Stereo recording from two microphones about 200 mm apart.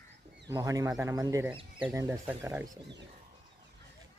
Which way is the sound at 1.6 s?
25° right (ahead or behind).